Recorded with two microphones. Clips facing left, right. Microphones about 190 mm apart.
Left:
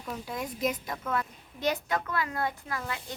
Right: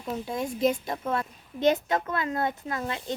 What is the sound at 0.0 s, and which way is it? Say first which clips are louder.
A woman's voice: right 5 dB; 25° right (ahead or behind).